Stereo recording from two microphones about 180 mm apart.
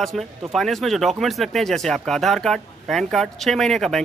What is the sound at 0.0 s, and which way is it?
Speech, centre (ahead or behind).